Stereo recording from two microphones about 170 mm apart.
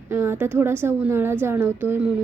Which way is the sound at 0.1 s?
15° right (ahead or behind).